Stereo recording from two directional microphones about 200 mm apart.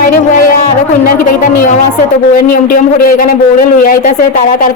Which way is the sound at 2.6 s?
45° left (ahead or behind).